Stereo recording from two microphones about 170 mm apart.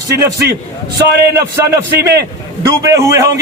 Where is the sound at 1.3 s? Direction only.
20° right (ahead or behind).